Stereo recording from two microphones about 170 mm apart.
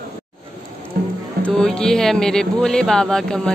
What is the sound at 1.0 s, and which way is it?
Music, 60° right (ahead or behind).